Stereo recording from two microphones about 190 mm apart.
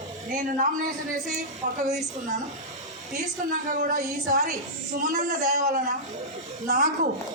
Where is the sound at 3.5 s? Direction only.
45° right (ahead or behind).